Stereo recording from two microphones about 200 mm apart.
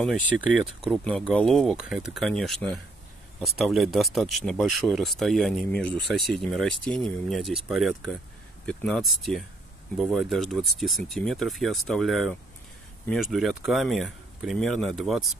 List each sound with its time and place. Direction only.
0.0 s speech: 5° right (ahead or behind)